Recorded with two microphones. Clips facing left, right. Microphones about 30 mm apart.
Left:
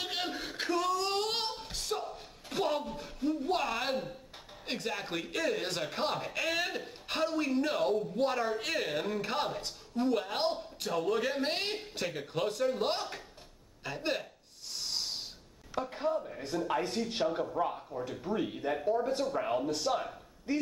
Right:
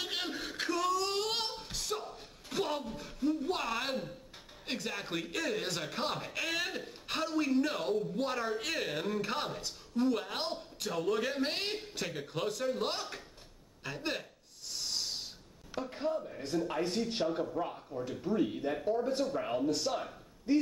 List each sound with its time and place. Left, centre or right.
0.0 s music: centre
4.8 s a man's voice: centre
15.8 s a man's voice: centre
19.3 s speech: centre